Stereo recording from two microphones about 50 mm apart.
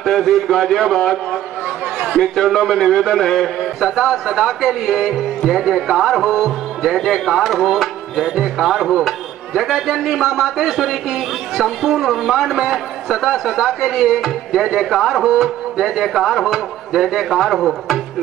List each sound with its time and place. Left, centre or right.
0.0 s speech: centre